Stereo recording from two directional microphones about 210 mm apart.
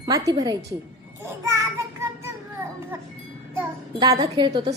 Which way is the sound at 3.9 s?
20° right (ahead or behind).